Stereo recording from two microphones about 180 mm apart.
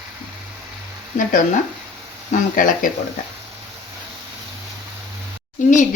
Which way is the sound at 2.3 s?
50° left (ahead or behind).